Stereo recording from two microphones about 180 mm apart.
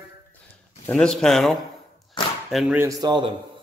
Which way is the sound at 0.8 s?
5° left (ahead or behind).